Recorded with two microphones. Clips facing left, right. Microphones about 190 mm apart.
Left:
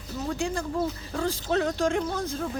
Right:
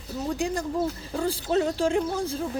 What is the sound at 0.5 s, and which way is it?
Speech, 15° right (ahead or behind).